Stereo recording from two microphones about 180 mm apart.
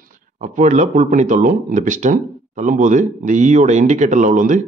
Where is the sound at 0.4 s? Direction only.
45° right (ahead or behind).